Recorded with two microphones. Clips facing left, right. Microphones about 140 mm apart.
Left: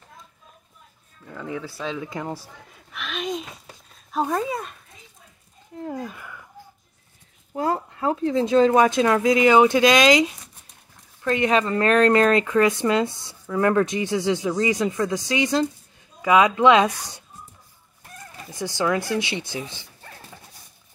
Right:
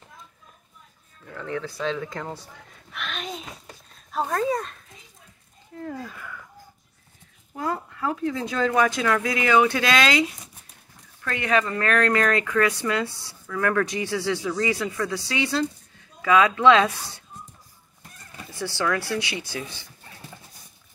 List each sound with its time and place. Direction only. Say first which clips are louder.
1.3 s speech: right 1 dB; 10° left (ahead or behind)
5.8 s speech: left 3 dB; 20° left (ahead or behind)
7.5 s speech: left 4 dB; 30° left (ahead or behind)
18.5 s speech: left 3 dB; 15° left (ahead or behind)